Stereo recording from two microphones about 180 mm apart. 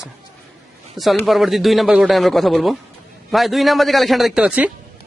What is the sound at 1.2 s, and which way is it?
Speech, centre (ahead or behind).